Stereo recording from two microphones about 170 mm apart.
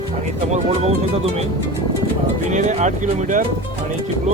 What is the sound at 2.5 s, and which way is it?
Speech, 45° right (ahead or behind).